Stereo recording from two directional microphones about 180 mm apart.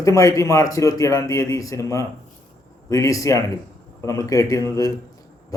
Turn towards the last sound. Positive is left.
turn(degrees=20)  # may be behind; listen again after turning